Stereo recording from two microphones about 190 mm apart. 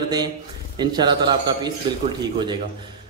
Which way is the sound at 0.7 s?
25° right (ahead or behind).